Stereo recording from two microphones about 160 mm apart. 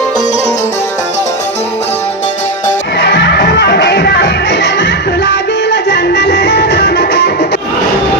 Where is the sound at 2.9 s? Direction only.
90° left.